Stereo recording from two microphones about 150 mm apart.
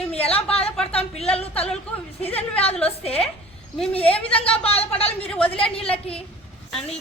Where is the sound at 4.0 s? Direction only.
10° left (ahead or behind).